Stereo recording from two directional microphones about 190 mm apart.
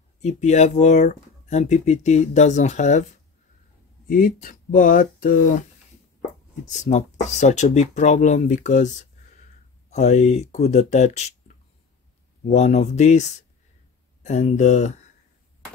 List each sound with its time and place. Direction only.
0.2 s speech: 35° left (ahead or behind)
6.6 s speech: 40° left (ahead or behind)